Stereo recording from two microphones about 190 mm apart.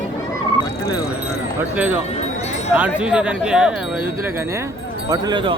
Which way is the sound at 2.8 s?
5° right (ahead or behind).